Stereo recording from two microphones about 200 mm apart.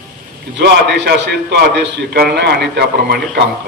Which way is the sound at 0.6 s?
55° right (ahead or behind).